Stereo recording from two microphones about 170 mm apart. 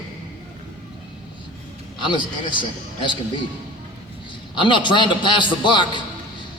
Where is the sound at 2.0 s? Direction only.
30° left (ahead or behind).